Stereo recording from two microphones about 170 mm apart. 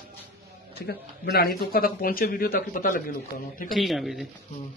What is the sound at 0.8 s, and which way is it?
Speech, 70° left (ahead or behind).